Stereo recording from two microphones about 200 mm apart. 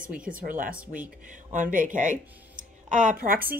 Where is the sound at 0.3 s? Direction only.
45° right (ahead or behind).